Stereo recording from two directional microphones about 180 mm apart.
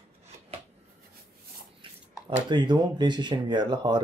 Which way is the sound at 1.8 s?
30° right (ahead or behind).